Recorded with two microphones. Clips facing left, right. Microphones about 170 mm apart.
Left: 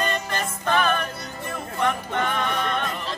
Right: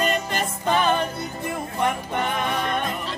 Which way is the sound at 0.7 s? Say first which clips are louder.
Right 2 dB; 20° right (ahead or behind).